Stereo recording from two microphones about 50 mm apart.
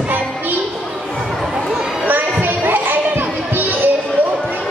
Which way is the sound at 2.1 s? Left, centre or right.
Right.